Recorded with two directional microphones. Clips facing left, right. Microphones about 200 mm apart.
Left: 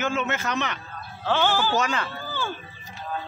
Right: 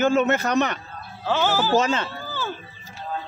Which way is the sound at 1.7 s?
25° right (ahead or behind).